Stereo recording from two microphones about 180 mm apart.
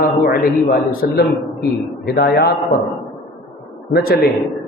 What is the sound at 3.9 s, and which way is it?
Speech, 60° left (ahead or behind).